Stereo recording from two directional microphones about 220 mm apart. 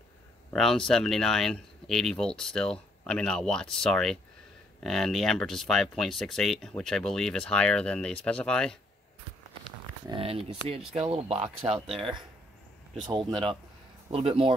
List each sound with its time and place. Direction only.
0.5 s speech: centre (ahead or behind)
10.0 s speech: 25° right (ahead or behind)
11.9 s speech: centre (ahead or behind)
13.3 s speech: 20° right (ahead or behind)